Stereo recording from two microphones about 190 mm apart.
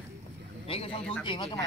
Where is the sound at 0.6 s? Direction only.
30° left (ahead or behind).